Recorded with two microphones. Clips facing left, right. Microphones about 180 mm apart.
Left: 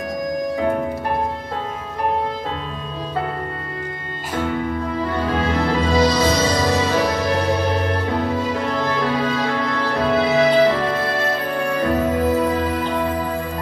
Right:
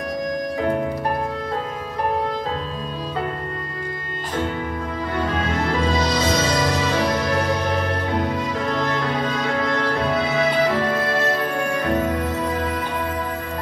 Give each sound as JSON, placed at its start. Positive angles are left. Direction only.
{"t": 5.2, "sound": "music", "side_deg": 30}